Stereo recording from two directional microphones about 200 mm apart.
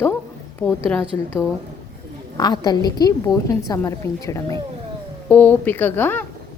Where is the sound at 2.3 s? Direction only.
20° left (ahead or behind).